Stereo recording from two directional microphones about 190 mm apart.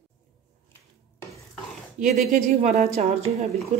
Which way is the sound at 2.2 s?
35° right (ahead or behind).